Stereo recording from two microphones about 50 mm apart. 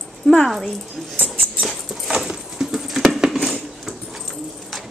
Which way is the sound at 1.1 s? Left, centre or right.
Right.